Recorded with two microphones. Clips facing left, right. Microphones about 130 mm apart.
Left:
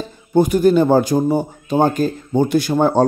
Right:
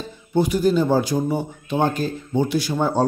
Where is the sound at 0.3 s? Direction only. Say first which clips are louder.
Left 5 dB; 50° left (ahead or behind).